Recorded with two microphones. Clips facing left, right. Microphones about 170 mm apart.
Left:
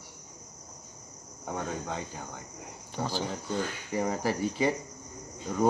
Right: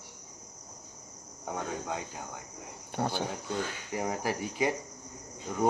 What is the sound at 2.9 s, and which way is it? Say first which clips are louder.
Speech: right 1 dB; 60° right (ahead or behind).